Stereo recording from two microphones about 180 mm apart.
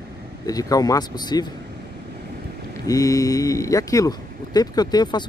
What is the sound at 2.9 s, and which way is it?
Speech, 20° left (ahead or behind).